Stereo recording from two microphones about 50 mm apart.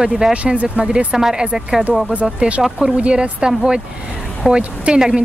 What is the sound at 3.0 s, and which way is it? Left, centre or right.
Speech, right.